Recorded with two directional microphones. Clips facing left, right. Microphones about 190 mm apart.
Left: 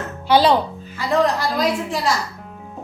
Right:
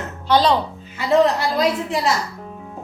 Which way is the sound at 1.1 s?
25° right (ahead or behind).